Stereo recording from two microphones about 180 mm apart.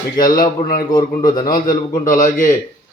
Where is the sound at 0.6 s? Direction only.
45° left (ahead or behind).